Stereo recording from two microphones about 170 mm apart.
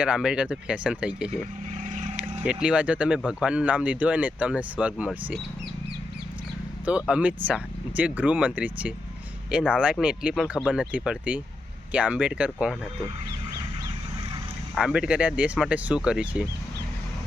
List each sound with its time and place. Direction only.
0.0 s speech: 5° right (ahead or behind)
1.8 s vehicle: 45° right (ahead or behind)
2.4 s speech: 5° right (ahead or behind)
6.8 s speech: 5° right (ahead or behind)
14.8 s speech: 5° right (ahead or behind)